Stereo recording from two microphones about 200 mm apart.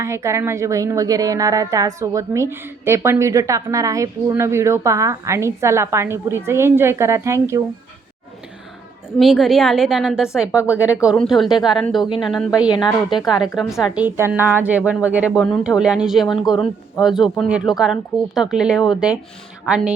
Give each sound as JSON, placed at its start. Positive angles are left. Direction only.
{"t": 0.0, "sound": "a woman's voice", "side_deg": -15}
{"t": 9.1, "sound": "speech", "side_deg": 0}
{"t": 11.4, "sound": "speech", "side_deg": 20}
{"t": 11.7, "sound": "speech", "side_deg": 0}